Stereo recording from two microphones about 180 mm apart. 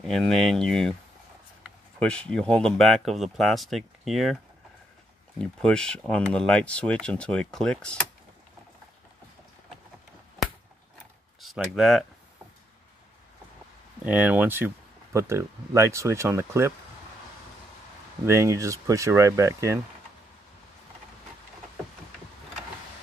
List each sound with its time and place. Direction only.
0.0 s speech: 5° left (ahead or behind)
2.0 s speech: 5° left (ahead or behind)
5.4 s speech: 5° left (ahead or behind)
11.4 s speech: centre (ahead or behind)
14.0 s speech: 10° right (ahead or behind)
18.2 s speech: 15° right (ahead or behind)